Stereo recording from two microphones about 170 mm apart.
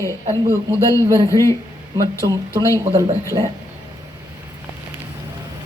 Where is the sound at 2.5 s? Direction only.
15° left (ahead or behind).